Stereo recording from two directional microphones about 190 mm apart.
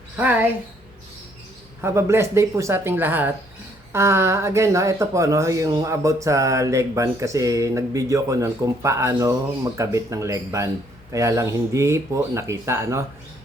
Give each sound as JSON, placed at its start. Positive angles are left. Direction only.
{"t": 0.2, "sound": "speech", "side_deg": -10}
{"t": 1.8, "sound": "speech", "side_deg": -15}